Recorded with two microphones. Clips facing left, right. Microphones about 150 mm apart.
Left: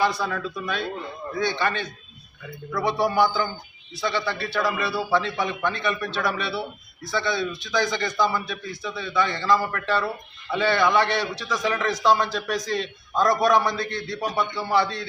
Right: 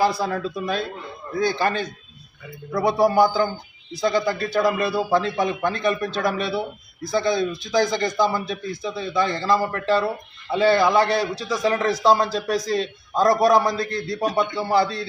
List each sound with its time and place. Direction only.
0.2 s a man's voice: 30° right (ahead or behind)